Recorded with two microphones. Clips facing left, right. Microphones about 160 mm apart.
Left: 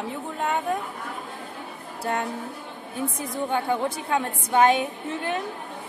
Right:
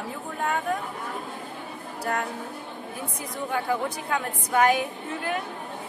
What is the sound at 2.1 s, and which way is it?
Speech, 25° left (ahead or behind).